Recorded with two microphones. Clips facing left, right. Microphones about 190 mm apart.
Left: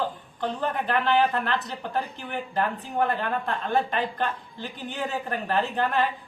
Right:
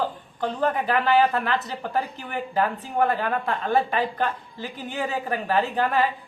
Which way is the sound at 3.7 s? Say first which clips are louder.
Right 3 dB; 5° right (ahead or behind).